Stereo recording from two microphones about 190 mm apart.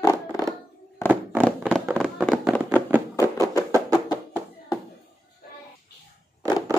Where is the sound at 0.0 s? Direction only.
20° left (ahead or behind).